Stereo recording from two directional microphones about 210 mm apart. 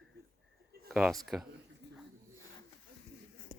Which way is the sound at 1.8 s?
55° right (ahead or behind).